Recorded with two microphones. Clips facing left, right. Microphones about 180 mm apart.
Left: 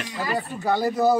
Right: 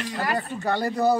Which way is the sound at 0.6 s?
5° left (ahead or behind).